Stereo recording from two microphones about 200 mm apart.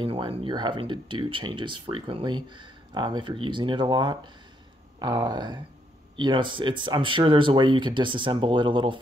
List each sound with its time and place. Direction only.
0.0 s speech: 25° right (ahead or behind)